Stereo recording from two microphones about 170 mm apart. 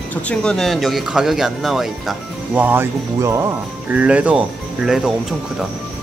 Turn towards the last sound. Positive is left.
turn(degrees=-5)  # may be behind; listen again after turning